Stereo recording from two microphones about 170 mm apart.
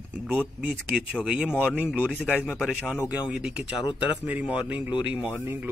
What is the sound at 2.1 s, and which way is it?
Speech, 10° left (ahead or behind).